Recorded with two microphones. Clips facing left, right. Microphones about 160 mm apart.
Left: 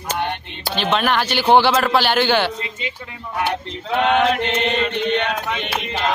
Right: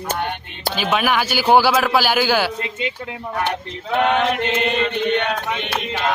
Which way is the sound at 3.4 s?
5° left (ahead or behind).